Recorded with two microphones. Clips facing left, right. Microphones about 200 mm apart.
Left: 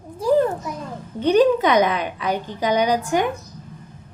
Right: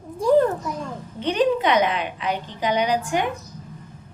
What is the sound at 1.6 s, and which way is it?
A woman's voice, 40° left (ahead or behind).